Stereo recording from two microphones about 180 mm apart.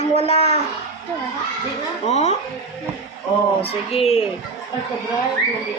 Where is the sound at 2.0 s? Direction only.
40° left (ahead or behind).